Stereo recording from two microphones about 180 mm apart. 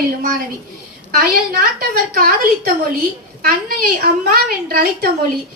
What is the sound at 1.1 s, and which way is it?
A woman's voice, 60° right (ahead or behind).